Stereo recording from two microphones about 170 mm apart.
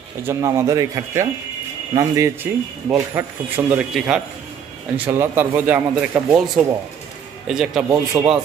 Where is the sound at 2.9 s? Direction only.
15° right (ahead or behind).